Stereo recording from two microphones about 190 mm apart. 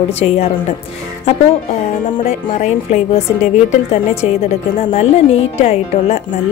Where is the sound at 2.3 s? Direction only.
35° left (ahead or behind).